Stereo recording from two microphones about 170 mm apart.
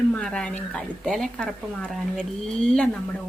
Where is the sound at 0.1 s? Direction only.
5° left (ahead or behind).